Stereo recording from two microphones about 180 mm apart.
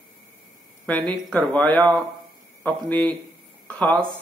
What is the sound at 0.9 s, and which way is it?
Speech, 10° left (ahead or behind).